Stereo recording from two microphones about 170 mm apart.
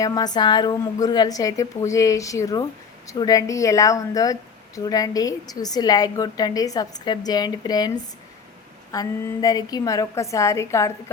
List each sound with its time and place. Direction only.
0.0 s a woman's voice: 20° left (ahead or behind)